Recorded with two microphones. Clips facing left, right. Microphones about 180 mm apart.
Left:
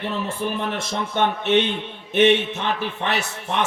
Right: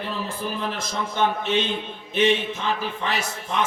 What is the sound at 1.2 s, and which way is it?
A man's voice, 65° left (ahead or behind).